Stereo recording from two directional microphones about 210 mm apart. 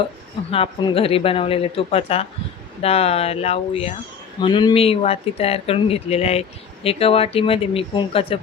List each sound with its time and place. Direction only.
0.5 s speech: 25° left (ahead or behind)